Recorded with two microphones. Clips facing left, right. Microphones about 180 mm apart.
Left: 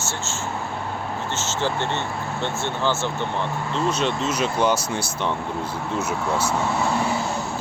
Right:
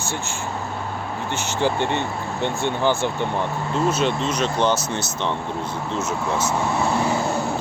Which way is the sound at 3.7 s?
5° right (ahead or behind).